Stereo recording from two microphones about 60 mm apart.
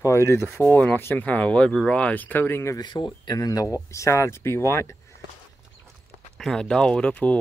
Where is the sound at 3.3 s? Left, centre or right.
Left.